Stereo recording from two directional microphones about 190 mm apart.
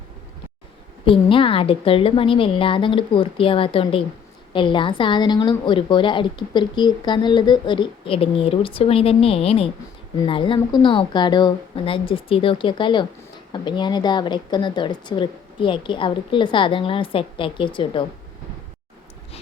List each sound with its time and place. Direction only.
1.0 s a woman's voice: 30° left (ahead or behind)